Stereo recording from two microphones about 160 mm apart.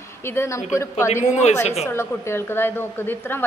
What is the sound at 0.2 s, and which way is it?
Speech, 15° left (ahead or behind).